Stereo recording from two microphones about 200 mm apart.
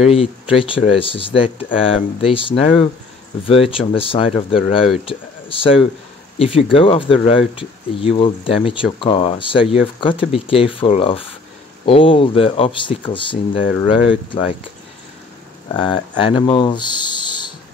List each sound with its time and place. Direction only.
0.0 s speech: 30° left (ahead or behind)
15.7 s speech: 25° left (ahead or behind)